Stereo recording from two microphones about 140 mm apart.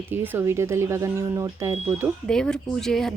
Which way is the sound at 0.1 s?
15° right (ahead or behind).